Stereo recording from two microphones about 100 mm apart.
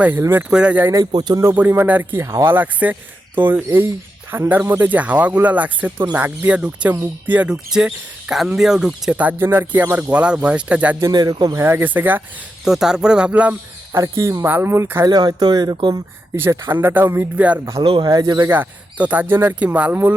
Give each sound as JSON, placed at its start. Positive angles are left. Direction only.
{"t": 0.2, "sound": "speech", "side_deg": -20}
{"t": 0.9, "sound": "speech", "side_deg": -45}
{"t": 1.5, "sound": "speech", "side_deg": -20}
{"t": 6.9, "sound": "speech", "side_deg": -25}
{"t": 7.3, "sound": "speech", "side_deg": -10}
{"t": 11.1, "sound": "speech", "side_deg": -45}
{"t": 11.6, "sound": "speech", "side_deg": -20}
{"t": 12.6, "sound": "speech", "side_deg": -5}
{"t": 13.9, "sound": "speech", "side_deg": -30}
{"t": 15.0, "sound": "speech", "side_deg": -45}
{"t": 16.3, "sound": "speech", "side_deg": -25}
{"t": 17.7, "sound": "speech", "side_deg": -55}
{"t": 18.4, "sound": "speech", "side_deg": -20}